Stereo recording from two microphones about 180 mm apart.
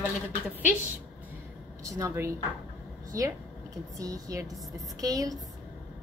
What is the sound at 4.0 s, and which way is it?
Speech, 20° right (ahead or behind).